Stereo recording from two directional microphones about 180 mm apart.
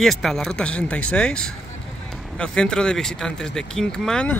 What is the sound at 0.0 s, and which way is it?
Speech, centre (ahead or behind).